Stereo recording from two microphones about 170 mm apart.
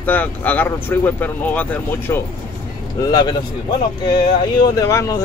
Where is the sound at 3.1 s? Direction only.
25° left (ahead or behind).